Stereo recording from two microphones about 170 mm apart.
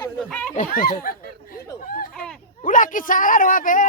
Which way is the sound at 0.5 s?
50° left (ahead or behind).